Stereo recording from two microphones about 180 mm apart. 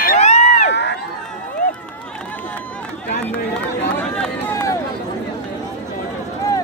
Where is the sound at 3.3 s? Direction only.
10° left (ahead or behind).